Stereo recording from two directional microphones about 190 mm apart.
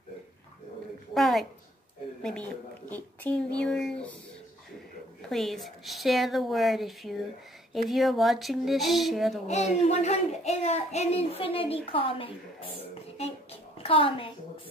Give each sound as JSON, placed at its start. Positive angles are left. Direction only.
{"t": 1.1, "sound": "a woman's voice", "side_deg": 0}
{"t": 2.9, "sound": "speech", "side_deg": 10}
{"t": 5.3, "sound": "a woman's voice", "side_deg": 0}
{"t": 9.8, "sound": "speech", "side_deg": 35}
{"t": 12.8, "sound": "a sound", "side_deg": 30}